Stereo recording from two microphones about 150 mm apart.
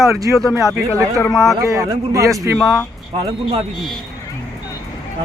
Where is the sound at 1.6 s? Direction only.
20° right (ahead or behind).